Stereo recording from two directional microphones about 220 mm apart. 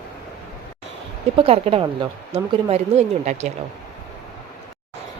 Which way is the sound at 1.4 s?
25° right (ahead or behind).